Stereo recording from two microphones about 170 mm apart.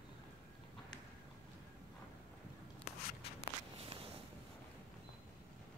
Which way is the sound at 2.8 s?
35° left (ahead or behind).